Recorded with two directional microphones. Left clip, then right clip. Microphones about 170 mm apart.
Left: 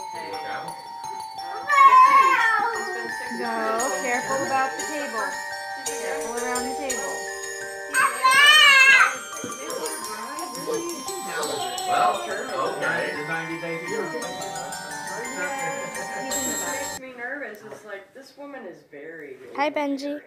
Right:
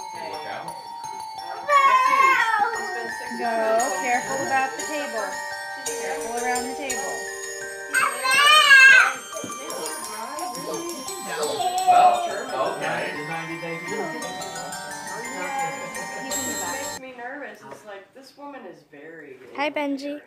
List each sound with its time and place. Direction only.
1.7 s music: centre (ahead or behind)
19.5 s a woman's voice: centre (ahead or behind)